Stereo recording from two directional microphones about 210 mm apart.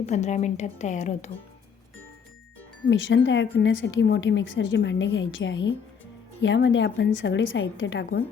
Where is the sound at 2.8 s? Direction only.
65° left (ahead or behind).